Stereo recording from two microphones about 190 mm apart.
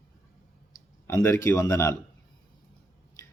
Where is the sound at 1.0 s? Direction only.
15° left (ahead or behind).